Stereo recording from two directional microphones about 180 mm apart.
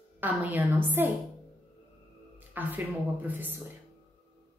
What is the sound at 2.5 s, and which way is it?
A woman's voice, 10° right (ahead or behind).